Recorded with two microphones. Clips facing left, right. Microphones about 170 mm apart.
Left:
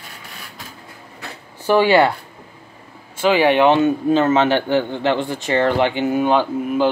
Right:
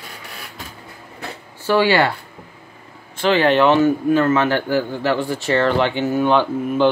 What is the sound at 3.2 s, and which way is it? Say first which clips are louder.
Speech: left 1 dB; 10° left (ahead or behind).